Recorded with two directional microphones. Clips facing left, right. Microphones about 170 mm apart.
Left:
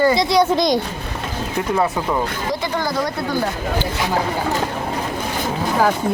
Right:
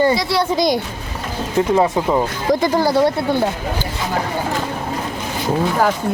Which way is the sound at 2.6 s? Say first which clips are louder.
Right 8 dB; 30° right (ahead or behind).